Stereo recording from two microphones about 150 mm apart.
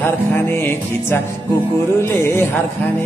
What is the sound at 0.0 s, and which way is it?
Music, 15° left (ahead or behind).